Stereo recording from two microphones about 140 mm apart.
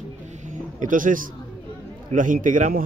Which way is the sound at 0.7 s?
70° right (ahead or behind).